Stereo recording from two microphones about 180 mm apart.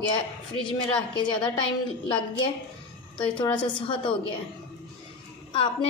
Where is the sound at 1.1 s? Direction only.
25° left (ahead or behind).